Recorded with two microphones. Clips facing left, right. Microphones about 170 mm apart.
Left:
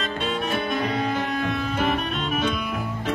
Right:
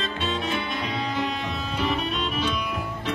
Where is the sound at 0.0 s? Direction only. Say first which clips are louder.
Left 2 dB; 50° left (ahead or behind).